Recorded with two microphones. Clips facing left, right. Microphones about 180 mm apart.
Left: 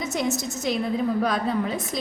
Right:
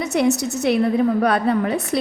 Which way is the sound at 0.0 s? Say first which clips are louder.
Right 7 dB; 70° right (ahead or behind).